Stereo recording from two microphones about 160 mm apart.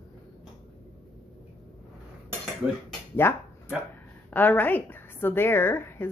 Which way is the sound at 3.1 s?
15° left (ahead or behind).